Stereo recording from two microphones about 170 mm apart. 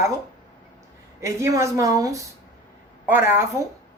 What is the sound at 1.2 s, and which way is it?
A woman's voice, 15° right (ahead or behind).